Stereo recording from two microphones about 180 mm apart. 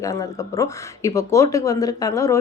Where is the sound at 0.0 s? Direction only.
20° left (ahead or behind).